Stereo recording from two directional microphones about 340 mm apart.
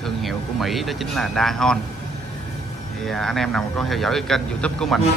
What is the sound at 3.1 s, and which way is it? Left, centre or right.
Speech, centre.